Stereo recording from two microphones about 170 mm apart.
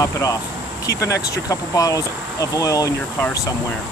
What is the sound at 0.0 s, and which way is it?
Speech, 20° left (ahead or behind).